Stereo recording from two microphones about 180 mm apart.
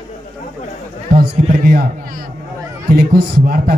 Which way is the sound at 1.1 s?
55° right (ahead or behind).